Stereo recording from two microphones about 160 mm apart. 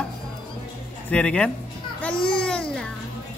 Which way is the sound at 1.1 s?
10° left (ahead or behind).